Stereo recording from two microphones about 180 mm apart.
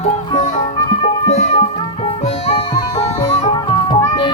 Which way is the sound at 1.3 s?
40° left (ahead or behind).